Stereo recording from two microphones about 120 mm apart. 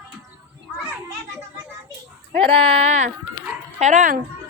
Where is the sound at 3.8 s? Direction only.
90° right.